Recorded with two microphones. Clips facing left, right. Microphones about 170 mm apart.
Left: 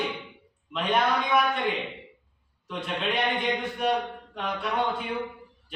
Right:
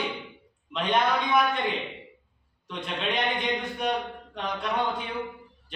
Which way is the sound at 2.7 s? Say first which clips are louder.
Left 1 dB; 5° left (ahead or behind).